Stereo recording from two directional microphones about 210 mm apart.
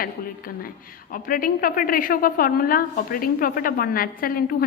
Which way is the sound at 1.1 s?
40° left (ahead or behind).